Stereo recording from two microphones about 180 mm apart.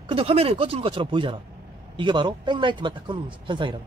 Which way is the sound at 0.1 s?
30° right (ahead or behind).